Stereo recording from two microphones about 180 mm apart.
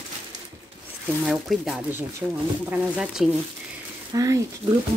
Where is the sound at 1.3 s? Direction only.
5° right (ahead or behind).